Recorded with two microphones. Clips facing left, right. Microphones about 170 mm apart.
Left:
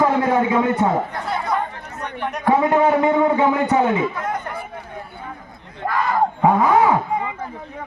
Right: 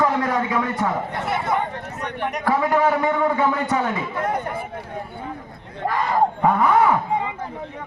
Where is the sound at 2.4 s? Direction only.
20° left (ahead or behind).